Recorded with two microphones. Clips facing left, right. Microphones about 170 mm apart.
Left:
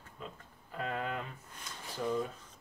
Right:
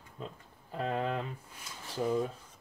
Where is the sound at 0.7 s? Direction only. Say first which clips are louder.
Right 4 dB; 30° right (ahead or behind).